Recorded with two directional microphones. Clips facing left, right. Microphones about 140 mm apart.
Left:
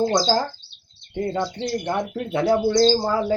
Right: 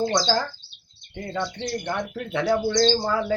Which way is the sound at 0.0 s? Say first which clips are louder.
Left 3 dB; 35° left (ahead or behind).